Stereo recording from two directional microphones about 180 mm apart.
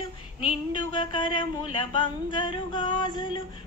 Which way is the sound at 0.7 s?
25° left (ahead or behind).